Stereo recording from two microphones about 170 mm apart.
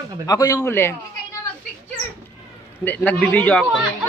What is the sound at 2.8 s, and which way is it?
Speech, 10° left (ahead or behind).